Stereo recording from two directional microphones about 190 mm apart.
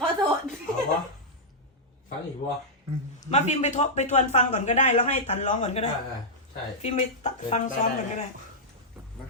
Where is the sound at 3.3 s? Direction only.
40° left (ahead or behind).